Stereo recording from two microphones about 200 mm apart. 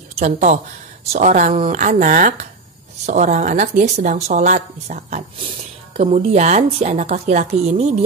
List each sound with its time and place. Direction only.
0.2 s speech: 35° right (ahead or behind)